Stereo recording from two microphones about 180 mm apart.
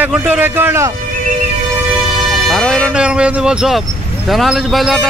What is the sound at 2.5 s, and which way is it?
Speech, centre (ahead or behind).